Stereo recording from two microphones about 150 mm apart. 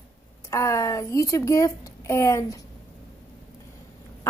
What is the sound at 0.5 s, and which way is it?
A woman's voice, 20° left (ahead or behind).